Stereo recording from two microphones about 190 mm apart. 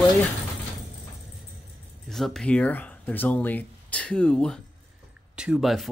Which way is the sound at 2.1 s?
Centre (ahead or behind).